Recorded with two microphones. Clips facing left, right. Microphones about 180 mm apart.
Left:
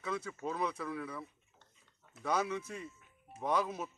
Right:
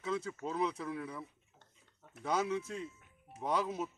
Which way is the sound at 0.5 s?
25° right (ahead or behind).